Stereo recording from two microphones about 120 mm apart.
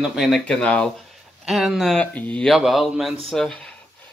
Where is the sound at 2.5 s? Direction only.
Centre (ahead or behind).